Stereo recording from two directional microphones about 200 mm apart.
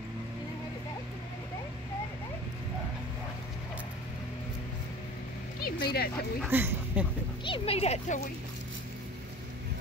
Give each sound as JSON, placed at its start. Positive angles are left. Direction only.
{"t": 5.6, "sound": "speech", "side_deg": 50}
{"t": 6.5, "sound": "speech", "side_deg": -10}
{"t": 7.4, "sound": "speech", "side_deg": 30}